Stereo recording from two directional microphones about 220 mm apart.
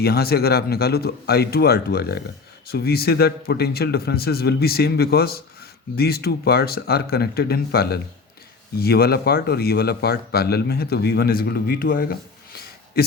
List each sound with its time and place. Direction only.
0.0 s a man's voice: 45° left (ahead or behind)